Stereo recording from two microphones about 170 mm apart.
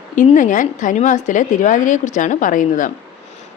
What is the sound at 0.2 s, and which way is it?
A woman's voice, 50° left (ahead or behind).